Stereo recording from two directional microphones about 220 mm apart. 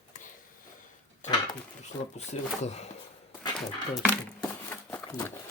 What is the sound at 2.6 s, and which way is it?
Speech, 30° left (ahead or behind).